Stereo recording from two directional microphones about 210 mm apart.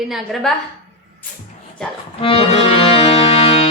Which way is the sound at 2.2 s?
25° left (ahead or behind).